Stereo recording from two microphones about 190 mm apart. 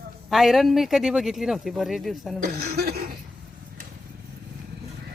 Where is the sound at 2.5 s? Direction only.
55° right (ahead or behind).